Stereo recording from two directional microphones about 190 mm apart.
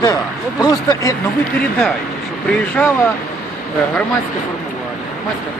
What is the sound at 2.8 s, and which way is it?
Speech, 10° left (ahead or behind).